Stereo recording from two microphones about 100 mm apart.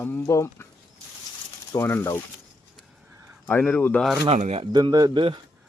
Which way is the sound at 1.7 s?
25° left (ahead or behind).